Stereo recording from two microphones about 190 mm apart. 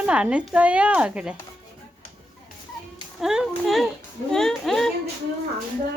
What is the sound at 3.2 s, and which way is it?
Speech, centre (ahead or behind).